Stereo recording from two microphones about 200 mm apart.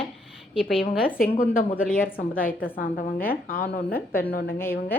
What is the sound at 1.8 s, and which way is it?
Speech, 5° left (ahead or behind).